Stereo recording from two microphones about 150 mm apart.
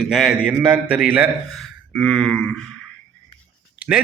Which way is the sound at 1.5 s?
Centre (ahead or behind).